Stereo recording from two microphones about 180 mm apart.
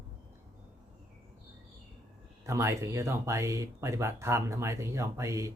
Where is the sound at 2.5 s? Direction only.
15° right (ahead or behind).